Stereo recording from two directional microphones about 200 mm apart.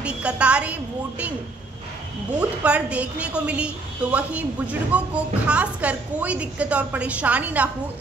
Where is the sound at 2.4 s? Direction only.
5° right (ahead or behind).